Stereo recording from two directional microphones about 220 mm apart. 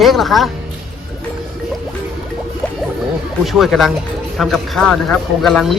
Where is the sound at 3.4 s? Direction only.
Centre (ahead or behind).